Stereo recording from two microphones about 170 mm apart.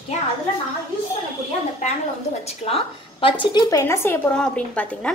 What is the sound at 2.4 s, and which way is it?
A woman's voice, 35° left (ahead or behind).